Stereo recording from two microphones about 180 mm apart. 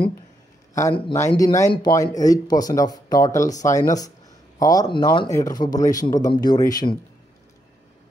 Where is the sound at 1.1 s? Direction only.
15° left (ahead or behind).